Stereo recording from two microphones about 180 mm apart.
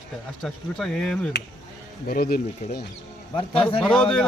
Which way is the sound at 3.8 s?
5° left (ahead or behind).